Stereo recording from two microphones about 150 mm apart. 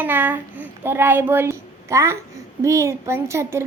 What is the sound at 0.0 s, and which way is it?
A child's voice, 10° right (ahead or behind).